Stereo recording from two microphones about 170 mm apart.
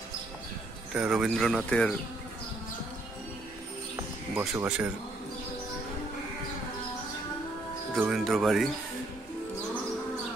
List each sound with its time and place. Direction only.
0.9 s speech: 5° right (ahead or behind)
3.9 s music: 15° right (ahead or behind)
4.6 s speech: 5° right (ahead or behind)
8.0 s speech: centre (ahead or behind)